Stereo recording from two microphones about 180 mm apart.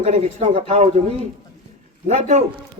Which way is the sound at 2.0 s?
40° right (ahead or behind).